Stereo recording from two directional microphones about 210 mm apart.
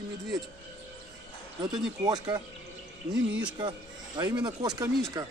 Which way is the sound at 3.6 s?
20° right (ahead or behind).